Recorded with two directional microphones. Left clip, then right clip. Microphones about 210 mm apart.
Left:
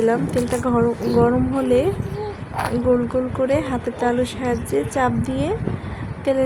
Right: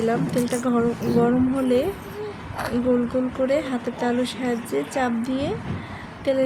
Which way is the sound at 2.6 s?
25° left (ahead or behind).